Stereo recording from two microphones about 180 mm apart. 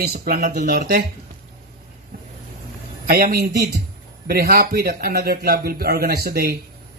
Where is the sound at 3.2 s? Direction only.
60° right (ahead or behind).